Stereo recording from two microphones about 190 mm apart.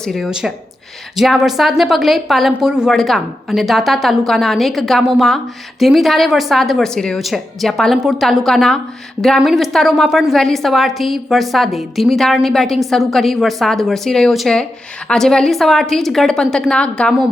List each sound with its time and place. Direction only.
0.0 s a woman's voice: centre (ahead or behind)